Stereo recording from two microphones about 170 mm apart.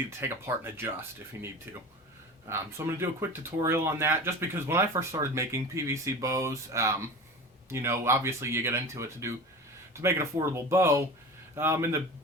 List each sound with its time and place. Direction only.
0.2 s speech: 15° right (ahead or behind)
2.5 s speech: 15° right (ahead or behind)